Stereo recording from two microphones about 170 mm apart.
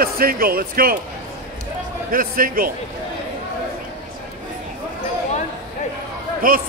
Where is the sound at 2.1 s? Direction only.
55° right (ahead or behind).